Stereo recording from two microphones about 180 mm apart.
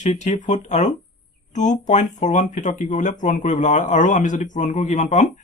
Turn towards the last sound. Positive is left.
turn(degrees=45)  # may be behind; listen again after turning